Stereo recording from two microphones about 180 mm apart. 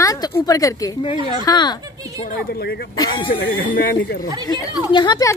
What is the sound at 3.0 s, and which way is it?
Speech, 25° left (ahead or behind).